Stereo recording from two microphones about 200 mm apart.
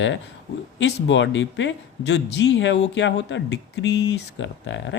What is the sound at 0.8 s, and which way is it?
Speech, 65° left (ahead or behind).